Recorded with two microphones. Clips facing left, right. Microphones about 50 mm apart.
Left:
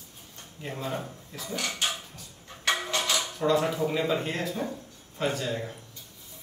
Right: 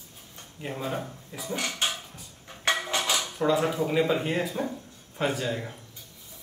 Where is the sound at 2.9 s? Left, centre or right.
Right.